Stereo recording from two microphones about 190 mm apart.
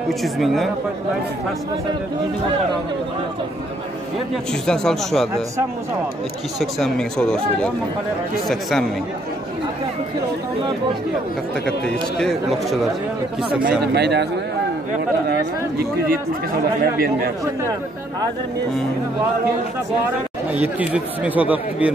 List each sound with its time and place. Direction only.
0.2 s speech: centre (ahead or behind)
4.5 s speech: 5° left (ahead or behind)
6.6 s speech: 5° left (ahead or behind)
11.8 s speech: 5° left (ahead or behind)
13.7 s speech: 60° right (ahead or behind)
16.8 s speech: 50° right (ahead or behind)
20.5 s speech: 10° right (ahead or behind)